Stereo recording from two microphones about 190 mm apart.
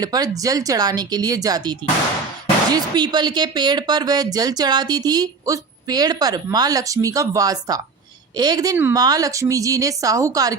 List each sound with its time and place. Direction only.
0.0 s speech: 20° right (ahead or behind)